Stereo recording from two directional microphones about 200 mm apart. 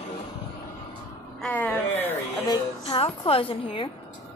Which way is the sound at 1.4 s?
5° left (ahead or behind).